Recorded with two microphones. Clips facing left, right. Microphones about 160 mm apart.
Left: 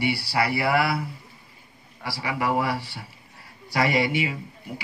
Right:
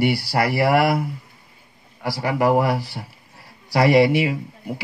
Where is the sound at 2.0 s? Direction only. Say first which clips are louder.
Right 7 dB; 45° right (ahead or behind).